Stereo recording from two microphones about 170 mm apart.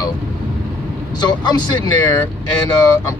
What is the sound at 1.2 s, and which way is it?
Speech, 25° left (ahead or behind).